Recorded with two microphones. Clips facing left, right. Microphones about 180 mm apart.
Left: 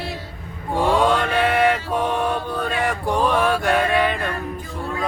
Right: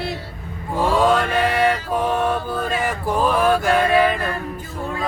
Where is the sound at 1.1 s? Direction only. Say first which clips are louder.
Right 1 dB; centre (ahead or behind).